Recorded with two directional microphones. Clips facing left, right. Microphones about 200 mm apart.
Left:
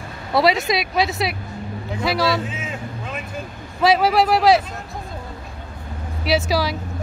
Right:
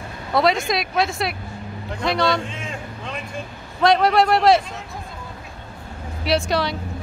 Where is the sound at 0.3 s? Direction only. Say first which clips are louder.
Left 1 dB; centre (ahead or behind).